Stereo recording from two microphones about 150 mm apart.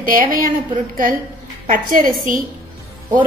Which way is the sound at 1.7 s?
65° right (ahead or behind).